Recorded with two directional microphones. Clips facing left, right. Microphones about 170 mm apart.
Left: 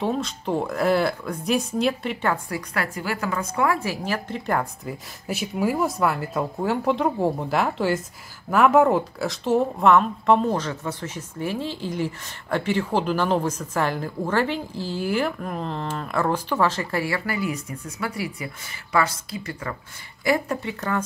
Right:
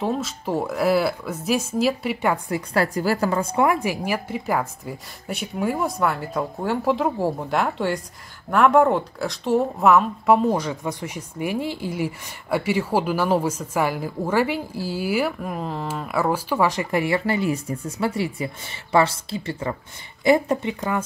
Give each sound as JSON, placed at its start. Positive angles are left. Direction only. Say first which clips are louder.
{"t": 0.0, "sound": "speech", "louder": "even", "side_deg": 0}
{"t": 2.3, "sound": "speech", "louder": "right 3 dB", "side_deg": -20}
{"t": 2.7, "sound": "a woman's voice", "louder": "right 8 dB", "side_deg": -35}
{"t": 3.5, "sound": "speech", "louder": "right 3 dB", "side_deg": -20}